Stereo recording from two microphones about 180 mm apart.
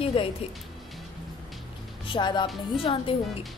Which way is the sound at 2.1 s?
25° left (ahead or behind).